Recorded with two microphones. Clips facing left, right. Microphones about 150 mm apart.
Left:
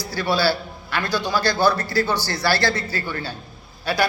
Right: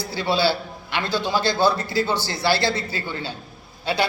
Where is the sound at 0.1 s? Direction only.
20° right (ahead or behind).